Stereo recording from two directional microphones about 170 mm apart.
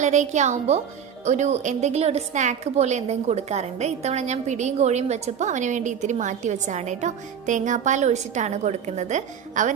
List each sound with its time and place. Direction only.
0.0 s a woman's voice: 45° right (ahead or behind)